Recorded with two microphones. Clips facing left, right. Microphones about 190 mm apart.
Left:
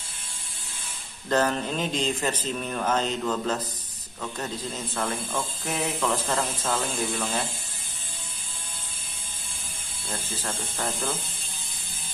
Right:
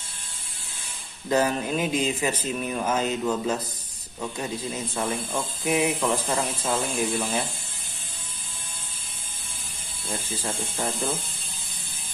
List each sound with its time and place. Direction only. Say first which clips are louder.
1.3 s speech: right 1 dB; 10° right (ahead or behind)
10.4 s speech: right 2 dB; 20° right (ahead or behind)